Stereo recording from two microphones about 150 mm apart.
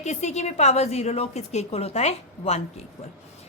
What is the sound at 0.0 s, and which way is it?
A woman's voice, 50° left (ahead or behind).